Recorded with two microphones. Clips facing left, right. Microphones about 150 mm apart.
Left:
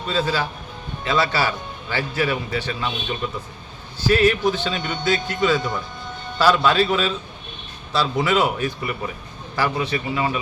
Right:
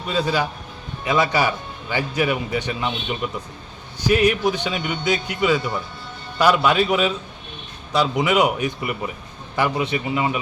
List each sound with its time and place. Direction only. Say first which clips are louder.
0.1 s a man's voice: right 1 dB; 15° right (ahead or behind)